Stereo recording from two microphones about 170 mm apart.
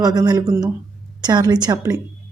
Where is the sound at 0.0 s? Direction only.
20° right (ahead or behind).